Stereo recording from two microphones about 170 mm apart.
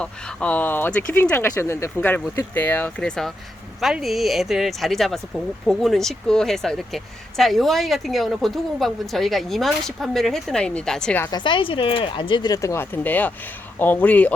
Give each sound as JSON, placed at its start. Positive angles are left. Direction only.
{"t": 0.0, "sound": "speech", "side_deg": 5}
{"t": 11.3, "sound": "speech", "side_deg": 25}